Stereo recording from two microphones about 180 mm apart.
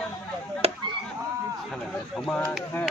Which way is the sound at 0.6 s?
35° right (ahead or behind).